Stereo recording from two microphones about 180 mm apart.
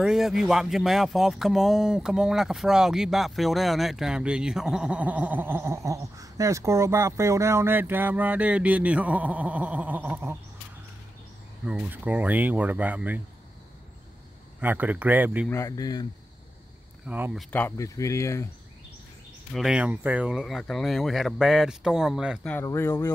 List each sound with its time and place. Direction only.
0.0 s speech: centre (ahead or behind)
11.6 s speech: 5° right (ahead or behind)
14.6 s speech: 10° right (ahead or behind)
15.5 s speech: 20° left (ahead or behind)
17.0 s speech: 5° right (ahead or behind)
17.5 s speech: 10° left (ahead or behind)
19.5 s speech: 5° right (ahead or behind)
22.4 s speech: 5° left (ahead or behind)